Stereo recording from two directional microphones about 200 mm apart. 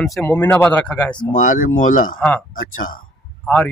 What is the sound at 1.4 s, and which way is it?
Speech, 40° left (ahead or behind).